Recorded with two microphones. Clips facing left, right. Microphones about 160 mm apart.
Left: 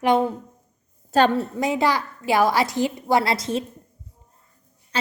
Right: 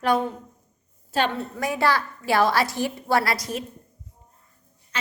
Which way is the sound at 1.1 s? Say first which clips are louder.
Left 6 dB; 40° left (ahead or behind).